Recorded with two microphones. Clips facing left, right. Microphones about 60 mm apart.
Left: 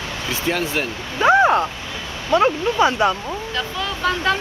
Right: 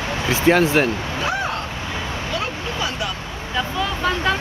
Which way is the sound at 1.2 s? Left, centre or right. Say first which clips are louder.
Left 12 dB; left.